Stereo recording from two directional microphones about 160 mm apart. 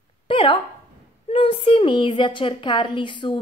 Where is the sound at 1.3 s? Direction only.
35° left (ahead or behind).